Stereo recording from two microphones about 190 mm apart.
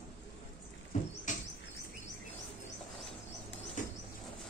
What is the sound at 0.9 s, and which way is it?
Rodents, 40° left (ahead or behind).